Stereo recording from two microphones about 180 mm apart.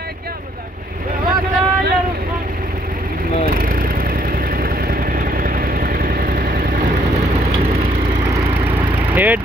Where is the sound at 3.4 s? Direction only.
55° right (ahead or behind).